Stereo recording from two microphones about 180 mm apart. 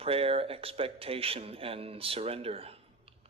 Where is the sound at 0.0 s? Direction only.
30° right (ahead or behind).